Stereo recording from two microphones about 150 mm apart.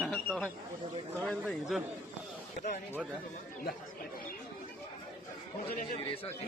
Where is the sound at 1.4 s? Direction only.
Centre (ahead or behind).